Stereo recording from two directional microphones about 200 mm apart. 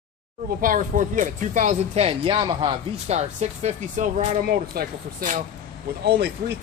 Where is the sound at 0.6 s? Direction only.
40° right (ahead or behind).